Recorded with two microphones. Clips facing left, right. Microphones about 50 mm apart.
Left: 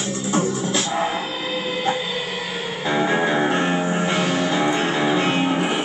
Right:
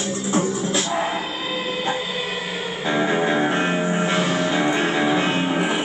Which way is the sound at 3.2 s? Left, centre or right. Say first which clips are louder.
Even; centre.